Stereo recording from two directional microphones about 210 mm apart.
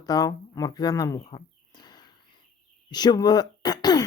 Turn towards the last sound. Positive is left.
turn(degrees=20)  # may be behind; listen again after turning